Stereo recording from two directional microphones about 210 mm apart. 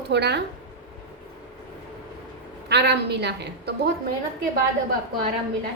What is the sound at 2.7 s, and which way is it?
A woman's voice, 55° right (ahead or behind).